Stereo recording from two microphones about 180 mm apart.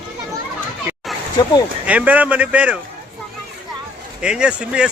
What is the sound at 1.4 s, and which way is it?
Speech, 25° left (ahead or behind).